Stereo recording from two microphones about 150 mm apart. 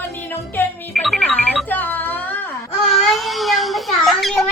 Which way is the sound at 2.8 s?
Centre (ahead or behind).